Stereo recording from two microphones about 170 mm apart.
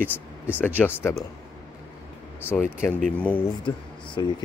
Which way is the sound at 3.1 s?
10° left (ahead or behind).